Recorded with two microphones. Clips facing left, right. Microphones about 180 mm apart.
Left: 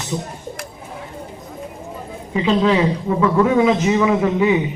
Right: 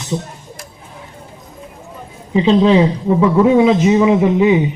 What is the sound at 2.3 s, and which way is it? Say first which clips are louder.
Speech: right 5 dB; 25° right (ahead or behind).